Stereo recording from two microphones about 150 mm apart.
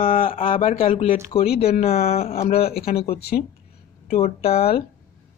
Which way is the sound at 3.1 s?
90° left.